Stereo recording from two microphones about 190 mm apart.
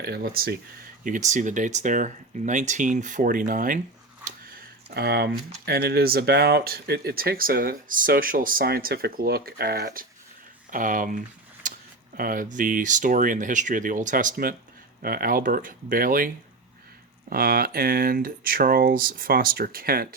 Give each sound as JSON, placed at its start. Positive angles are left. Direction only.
{"t": 0.0, "sound": "speech", "side_deg": -55}
{"t": 1.0, "sound": "speech", "side_deg": -40}
{"t": 4.9, "sound": "speech", "side_deg": -55}
{"t": 11.6, "sound": "a sound", "side_deg": -45}
{"t": 12.1, "sound": "speech", "side_deg": -50}